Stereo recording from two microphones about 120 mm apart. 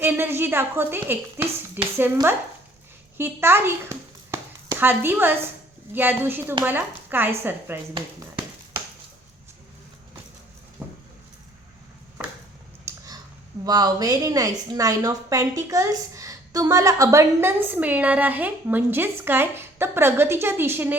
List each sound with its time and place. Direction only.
0.0 s speech: 20° right (ahead or behind)
3.2 s a child's voice: 20° right (ahead or behind)
10.8 s vehicle: 10° right (ahead or behind)
12.9 s a sound: 25° right (ahead or behind)
13.7 s a woman's voice: 35° right (ahead or behind); by 20.9 s 20° right (ahead or behind)